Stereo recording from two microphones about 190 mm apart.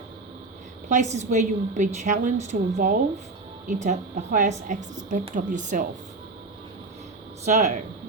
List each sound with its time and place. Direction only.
0.9 s a woman's voice: 40° right (ahead or behind)
7.4 s a woman's voice: 40° right (ahead or behind)